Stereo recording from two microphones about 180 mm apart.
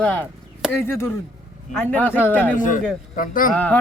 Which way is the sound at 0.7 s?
15° left (ahead or behind).